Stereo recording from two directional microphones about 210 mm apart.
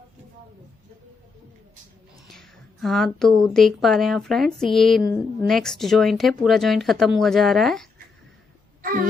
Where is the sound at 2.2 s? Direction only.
Centre (ahead or behind).